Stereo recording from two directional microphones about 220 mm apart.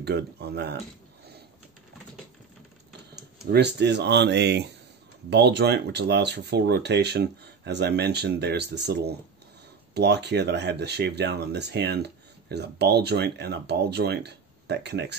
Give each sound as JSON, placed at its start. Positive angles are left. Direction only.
{"t": 0.0, "sound": "speech", "side_deg": -50}
{"t": 3.5, "sound": "speech", "side_deg": -50}